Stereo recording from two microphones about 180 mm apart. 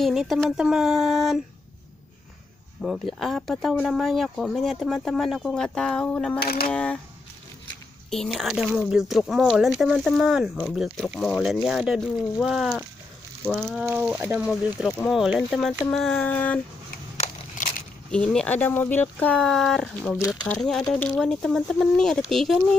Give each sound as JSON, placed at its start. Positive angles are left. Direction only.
{"t": 0.0, "sound": "speech", "side_deg": 0}
{"t": 2.8, "sound": "speech", "side_deg": 0}
{"t": 6.4, "sound": "speech", "side_deg": 60}
{"t": 6.7, "sound": "speech", "side_deg": 5}
{"t": 8.1, "sound": "speech", "side_deg": 0}
{"t": 13.8, "sound": "speech", "side_deg": -10}
{"t": 17.2, "sound": "crushing", "side_deg": 45}
{"t": 18.1, "sound": "speech", "side_deg": 5}